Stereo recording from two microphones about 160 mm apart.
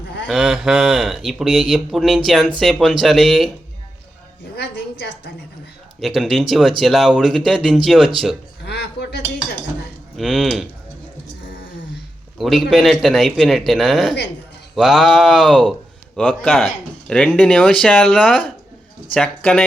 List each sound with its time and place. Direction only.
0.3 s speech: centre (ahead or behind)
4.5 s a woman's voice: 90° left
6.0 s speech: centre (ahead or behind)
8.6 s a sound: 90° left
10.2 s speech: centre (ahead or behind)
12.4 s speech: centre (ahead or behind)